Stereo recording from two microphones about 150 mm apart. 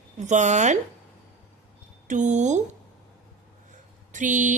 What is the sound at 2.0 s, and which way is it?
Speech, 55° right (ahead or behind).